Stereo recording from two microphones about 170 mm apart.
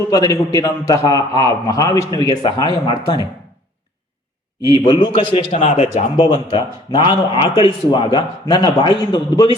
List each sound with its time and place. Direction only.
0.1 s a man's voice: 20° left (ahead or behind)
4.7 s a man's voice: 25° left (ahead or behind)
6.1 s a man's voice: 25° left (ahead or behind)